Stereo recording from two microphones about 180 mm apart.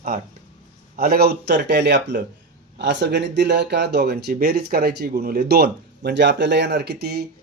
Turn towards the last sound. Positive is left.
turn(degrees=-65)  # may be behind; listen again after turning